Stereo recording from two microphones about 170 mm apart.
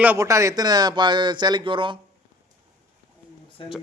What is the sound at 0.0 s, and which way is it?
Speech, 15° right (ahead or behind).